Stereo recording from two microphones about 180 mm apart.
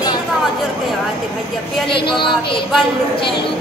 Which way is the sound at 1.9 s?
30° left (ahead or behind).